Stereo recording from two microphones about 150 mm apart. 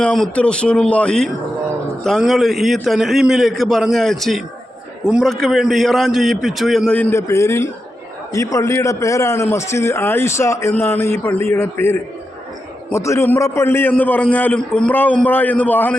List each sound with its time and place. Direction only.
0.0 s a man's voice: 5° left (ahead or behind)